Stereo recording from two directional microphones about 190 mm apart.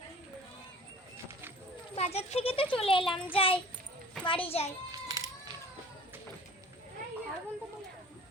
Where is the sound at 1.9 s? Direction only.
35° left (ahead or behind).